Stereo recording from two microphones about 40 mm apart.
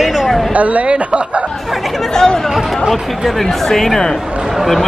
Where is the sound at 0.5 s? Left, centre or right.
Right.